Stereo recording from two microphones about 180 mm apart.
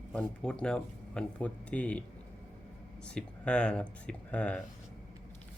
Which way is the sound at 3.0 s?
5° left (ahead or behind).